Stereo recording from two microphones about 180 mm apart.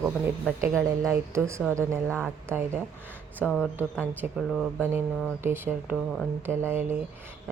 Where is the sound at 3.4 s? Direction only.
5° left (ahead or behind).